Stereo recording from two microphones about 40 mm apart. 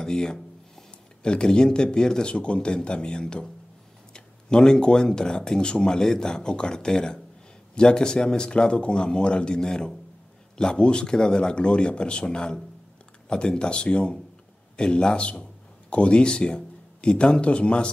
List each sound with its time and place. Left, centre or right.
0.0 s speech: centre